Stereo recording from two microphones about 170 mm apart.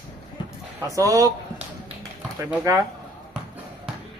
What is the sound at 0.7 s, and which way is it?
Speech, 20° right (ahead or behind).